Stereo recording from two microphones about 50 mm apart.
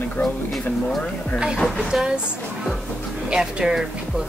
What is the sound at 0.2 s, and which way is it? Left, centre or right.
Speech, left.